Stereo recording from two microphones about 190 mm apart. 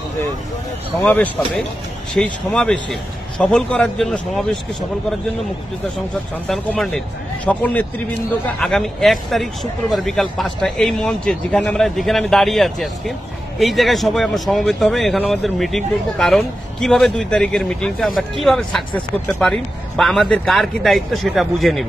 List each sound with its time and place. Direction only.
1.0 s speech: 10° left (ahead or behind)
6.5 s speech: 5° left (ahead or behind)